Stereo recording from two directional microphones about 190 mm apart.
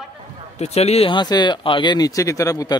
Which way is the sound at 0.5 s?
35° left (ahead or behind).